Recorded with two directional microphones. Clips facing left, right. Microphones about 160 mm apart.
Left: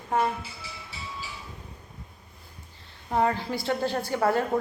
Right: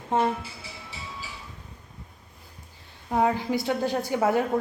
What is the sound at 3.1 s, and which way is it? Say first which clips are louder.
A woman's voice: right 2 dB; 10° right (ahead or behind).